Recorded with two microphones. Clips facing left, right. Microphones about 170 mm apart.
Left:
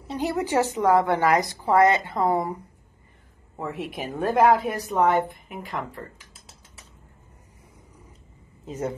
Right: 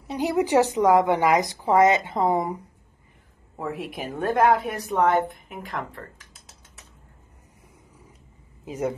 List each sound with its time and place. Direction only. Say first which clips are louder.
0.1 s a woman's voice: right 3 dB; 15° right (ahead or behind)
3.5 s a woman's voice: even; centre (ahead or behind)
8.6 s speech: right 2 dB; 10° right (ahead or behind)